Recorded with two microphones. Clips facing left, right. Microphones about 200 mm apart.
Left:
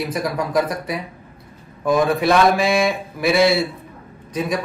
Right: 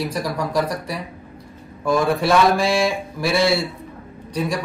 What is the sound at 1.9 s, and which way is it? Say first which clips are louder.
Speech: left 1 dB; centre (ahead or behind).